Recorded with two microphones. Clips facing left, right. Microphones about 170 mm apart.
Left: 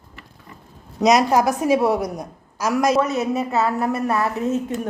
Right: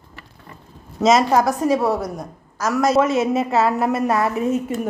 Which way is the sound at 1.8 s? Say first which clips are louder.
Left 1 dB; 20° left (ahead or behind).